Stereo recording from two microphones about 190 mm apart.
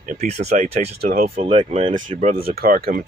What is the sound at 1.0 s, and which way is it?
Speech, 50° right (ahead or behind).